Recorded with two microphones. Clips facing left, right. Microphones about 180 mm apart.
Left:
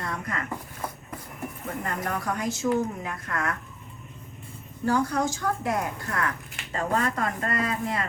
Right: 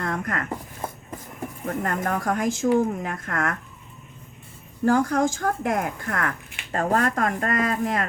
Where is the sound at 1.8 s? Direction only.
50° right (ahead or behind).